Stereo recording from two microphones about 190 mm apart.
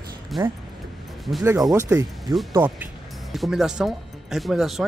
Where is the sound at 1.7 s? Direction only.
15° right (ahead or behind).